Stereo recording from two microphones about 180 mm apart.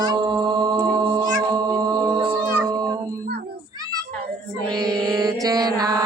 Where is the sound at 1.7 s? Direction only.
20° right (ahead or behind).